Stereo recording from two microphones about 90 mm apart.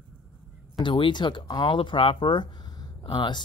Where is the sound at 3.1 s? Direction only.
55° left (ahead or behind).